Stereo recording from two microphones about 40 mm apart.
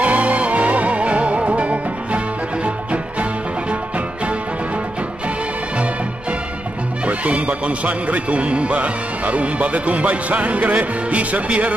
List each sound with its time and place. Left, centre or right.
0.0 s music: right
7.1 s speech: right